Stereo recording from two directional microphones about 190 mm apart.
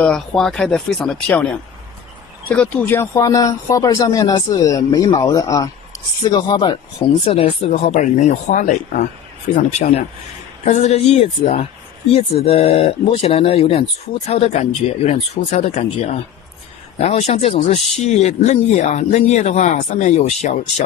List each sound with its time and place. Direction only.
0.0 s speech: 5° left (ahead or behind); by 20.8 s 40° left (ahead or behind)